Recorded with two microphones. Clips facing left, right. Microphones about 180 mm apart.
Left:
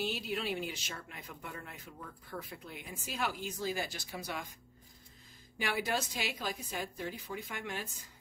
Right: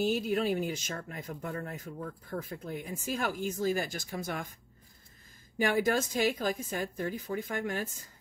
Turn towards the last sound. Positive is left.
turn(degrees=-45)  # may be behind; listen again after turning